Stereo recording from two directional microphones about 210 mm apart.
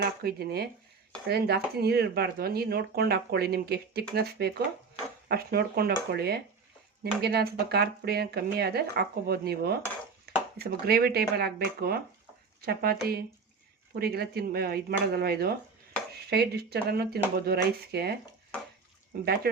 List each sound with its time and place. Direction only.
0.0 s speech: 50° right (ahead or behind)
10.3 s a sound: 50° right (ahead or behind)
10.6 s speech: 50° right (ahead or behind)